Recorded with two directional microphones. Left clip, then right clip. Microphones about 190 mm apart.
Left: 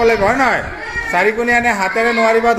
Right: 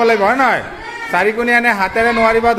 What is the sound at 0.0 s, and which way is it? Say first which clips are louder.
A man's voice: right 1 dB; 10° right (ahead or behind).